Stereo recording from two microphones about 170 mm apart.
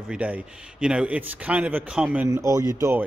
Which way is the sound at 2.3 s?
20° right (ahead or behind).